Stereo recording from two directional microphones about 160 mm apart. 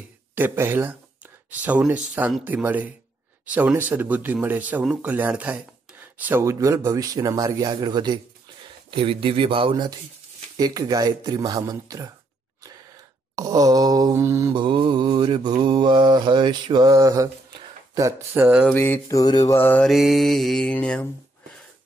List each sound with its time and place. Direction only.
0.3 s speech: 10° right (ahead or behind); by 9.9 s 30° right (ahead or behind)
10.6 s mantra: 25° right (ahead or behind)
13.4 s mantra: 25° right (ahead or behind)
14.5 s speech: 30° right (ahead or behind)
15.6 s mantra: 30° right (ahead or behind)
17.9 s speech: 15° right (ahead or behind)
18.7 s mantra: 10° left (ahead or behind)
19.9 s mantra: centre (ahead or behind)